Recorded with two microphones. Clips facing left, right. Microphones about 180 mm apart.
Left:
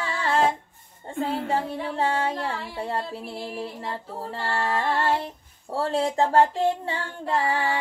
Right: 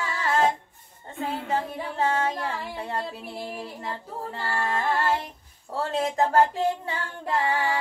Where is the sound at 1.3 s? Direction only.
30° left (ahead or behind).